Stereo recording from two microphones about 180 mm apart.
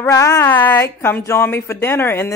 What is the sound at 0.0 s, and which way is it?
A woman's voice, 20° left (ahead or behind).